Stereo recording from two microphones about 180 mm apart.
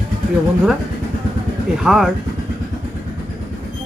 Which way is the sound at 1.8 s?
5° right (ahead or behind).